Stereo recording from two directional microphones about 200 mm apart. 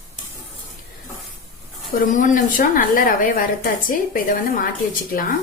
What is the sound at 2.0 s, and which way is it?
A woman's voice, 40° left (ahead or behind).